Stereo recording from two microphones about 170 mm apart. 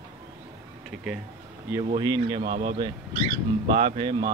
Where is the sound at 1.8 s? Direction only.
25° right (ahead or behind).